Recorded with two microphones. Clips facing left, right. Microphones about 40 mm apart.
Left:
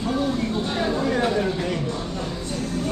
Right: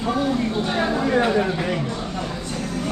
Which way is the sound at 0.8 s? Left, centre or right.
Right.